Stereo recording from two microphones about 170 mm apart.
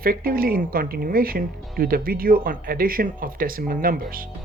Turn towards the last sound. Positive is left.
turn(degrees=-55)  # may be behind; listen again after turning